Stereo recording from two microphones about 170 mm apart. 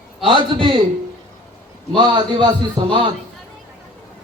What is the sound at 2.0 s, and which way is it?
A man's voice, 25° right (ahead or behind).